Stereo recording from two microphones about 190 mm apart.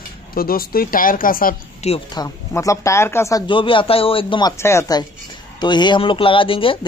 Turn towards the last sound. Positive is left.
turn(degrees=30)  # may be behind; listen again after turning